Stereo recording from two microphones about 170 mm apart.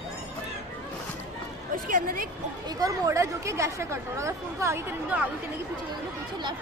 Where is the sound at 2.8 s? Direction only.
20° right (ahead or behind).